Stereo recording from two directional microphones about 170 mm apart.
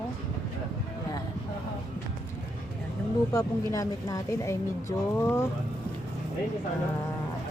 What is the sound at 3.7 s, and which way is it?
Speech, 20° left (ahead or behind).